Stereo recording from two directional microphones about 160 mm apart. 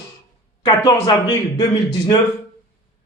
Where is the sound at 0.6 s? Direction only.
25° left (ahead or behind).